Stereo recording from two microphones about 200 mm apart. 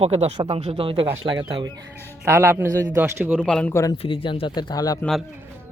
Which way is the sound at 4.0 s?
25° left (ahead or behind).